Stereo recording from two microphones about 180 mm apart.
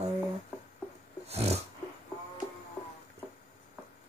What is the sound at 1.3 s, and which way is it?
Dog, 35° right (ahead or behind).